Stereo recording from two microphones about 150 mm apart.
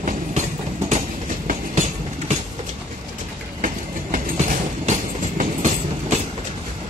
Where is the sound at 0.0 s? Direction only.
55° right (ahead or behind).